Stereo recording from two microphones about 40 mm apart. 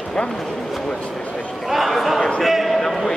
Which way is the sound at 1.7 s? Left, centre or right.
Centre.